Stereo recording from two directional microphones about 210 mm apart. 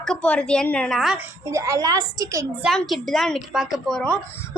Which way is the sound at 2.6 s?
Centre (ahead or behind).